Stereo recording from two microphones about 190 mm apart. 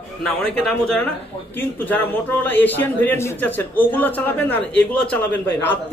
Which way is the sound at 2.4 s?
10° left (ahead or behind).